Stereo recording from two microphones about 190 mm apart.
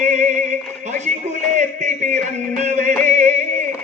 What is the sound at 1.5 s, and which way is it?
Music, 40° right (ahead or behind).